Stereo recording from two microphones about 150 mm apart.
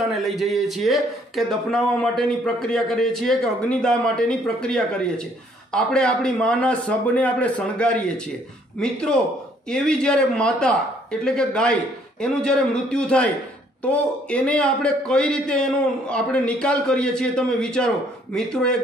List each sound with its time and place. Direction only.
0.0 s a man's voice: centre (ahead or behind)